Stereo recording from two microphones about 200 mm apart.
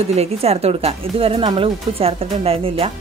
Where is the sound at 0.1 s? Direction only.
30° right (ahead or behind).